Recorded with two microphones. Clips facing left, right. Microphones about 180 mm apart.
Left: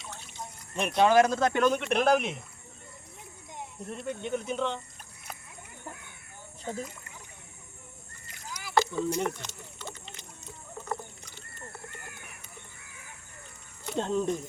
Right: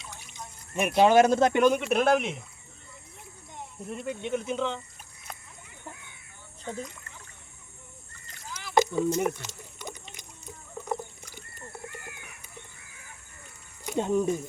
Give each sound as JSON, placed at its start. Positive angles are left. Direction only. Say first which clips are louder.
{"t": 0.8, "sound": "speech", "louder": "right 3 dB", "side_deg": -5}
{"t": 1.0, "sound": "speech", "louder": "right 3 dB", "side_deg": -25}
{"t": 1.8, "sound": "speech", "louder": "right 1 dB", "side_deg": 0}
{"t": 3.8, "sound": "speech", "louder": "right 2 dB", "side_deg": -5}
{"t": 8.7, "sound": "a sound", "louder": "right 3 dB", "side_deg": -15}
{"t": 13.8, "sound": "speech", "louder": "right 3 dB", "side_deg": -10}